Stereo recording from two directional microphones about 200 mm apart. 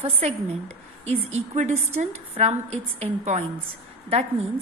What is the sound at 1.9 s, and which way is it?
Speech, 30° right (ahead or behind).